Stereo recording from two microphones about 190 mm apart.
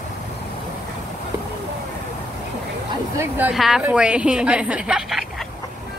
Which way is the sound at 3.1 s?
15° right (ahead or behind).